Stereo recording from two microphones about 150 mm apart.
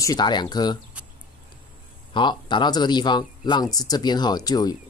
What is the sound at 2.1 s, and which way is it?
Speech, 30° left (ahead or behind).